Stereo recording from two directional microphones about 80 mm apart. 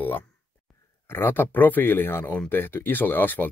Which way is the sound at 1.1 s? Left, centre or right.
Left.